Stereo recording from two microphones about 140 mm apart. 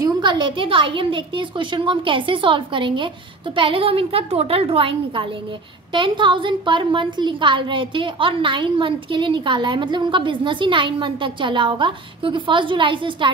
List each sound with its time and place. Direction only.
0.0 s a woman's voice: 35° right (ahead or behind)